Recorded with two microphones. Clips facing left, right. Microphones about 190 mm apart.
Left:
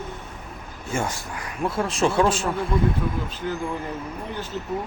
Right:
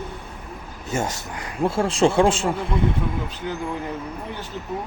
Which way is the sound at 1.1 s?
25° right (ahead or behind).